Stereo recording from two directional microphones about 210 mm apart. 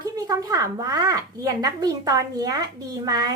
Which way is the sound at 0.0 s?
15° right (ahead or behind).